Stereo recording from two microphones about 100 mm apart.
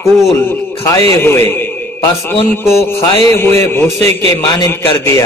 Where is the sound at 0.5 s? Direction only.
30° left (ahead or behind).